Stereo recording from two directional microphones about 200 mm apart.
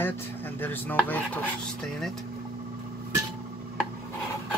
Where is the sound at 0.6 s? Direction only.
10° left (ahead or behind).